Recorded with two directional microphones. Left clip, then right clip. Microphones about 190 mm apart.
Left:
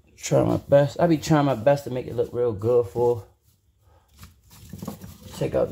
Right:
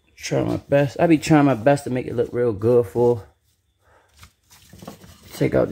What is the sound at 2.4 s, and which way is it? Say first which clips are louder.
Speech: right 3 dB; 50° right (ahead or behind).